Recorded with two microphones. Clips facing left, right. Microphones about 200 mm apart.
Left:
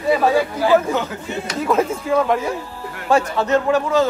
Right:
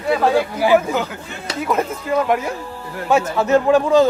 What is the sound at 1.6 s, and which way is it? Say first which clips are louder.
Speech: left 2 dB; centre (ahead or behind).